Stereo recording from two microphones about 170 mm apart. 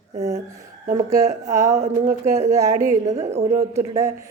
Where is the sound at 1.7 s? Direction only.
45° right (ahead or behind).